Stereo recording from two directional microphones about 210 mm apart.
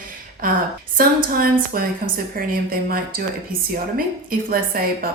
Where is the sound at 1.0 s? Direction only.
45° right (ahead or behind).